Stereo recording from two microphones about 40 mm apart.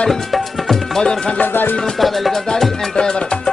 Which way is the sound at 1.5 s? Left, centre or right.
Left.